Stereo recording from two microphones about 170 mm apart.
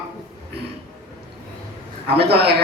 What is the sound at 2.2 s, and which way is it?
Speech, 70° right (ahead or behind).